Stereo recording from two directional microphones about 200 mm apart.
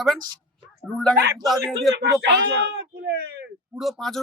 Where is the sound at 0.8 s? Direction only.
5° left (ahead or behind).